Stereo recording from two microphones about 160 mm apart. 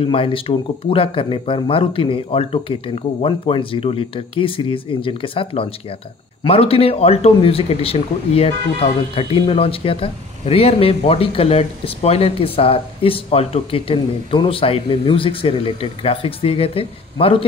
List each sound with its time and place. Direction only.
0.0 s speech: 35° left (ahead or behind)